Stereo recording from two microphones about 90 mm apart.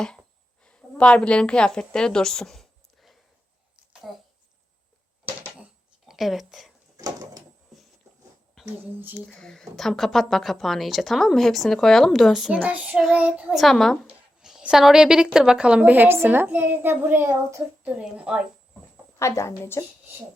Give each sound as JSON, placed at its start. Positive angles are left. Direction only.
{"t": 0.6, "sound": "a woman's voice", "side_deg": 10}
{"t": 6.1, "sound": "speech", "side_deg": 0}
{"t": 6.9, "sound": "door", "side_deg": -45}
{"t": 8.8, "sound": "speech", "side_deg": -20}
{"t": 9.1, "sound": "speech", "side_deg": 10}
{"t": 12.6, "sound": "speech", "side_deg": -15}
{"t": 13.5, "sound": "speech", "side_deg": 0}
{"t": 18.0, "sound": "speech", "side_deg": -10}
{"t": 19.2, "sound": "a woman's voice", "side_deg": 30}